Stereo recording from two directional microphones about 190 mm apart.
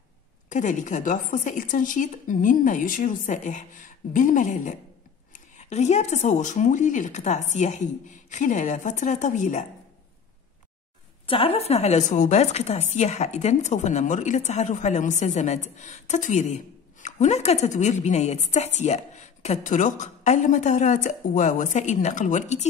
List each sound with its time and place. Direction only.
0.5 s a woman's voice: 40° left (ahead or behind)
11.2 s a woman's voice: 30° left (ahead or behind)